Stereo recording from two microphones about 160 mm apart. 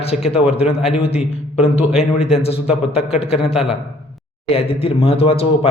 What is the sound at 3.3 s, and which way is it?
Speech, 5° right (ahead or behind).